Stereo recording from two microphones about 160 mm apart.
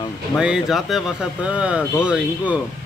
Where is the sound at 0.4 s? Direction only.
5° right (ahead or behind).